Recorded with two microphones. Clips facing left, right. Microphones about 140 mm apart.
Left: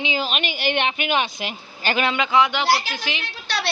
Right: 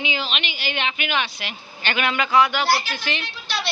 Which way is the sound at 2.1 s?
20° left (ahead or behind).